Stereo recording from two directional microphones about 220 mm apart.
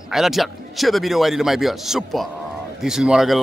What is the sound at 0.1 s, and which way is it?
Speech, centre (ahead or behind).